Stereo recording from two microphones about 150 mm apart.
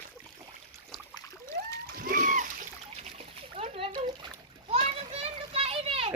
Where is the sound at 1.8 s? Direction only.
65° right (ahead or behind).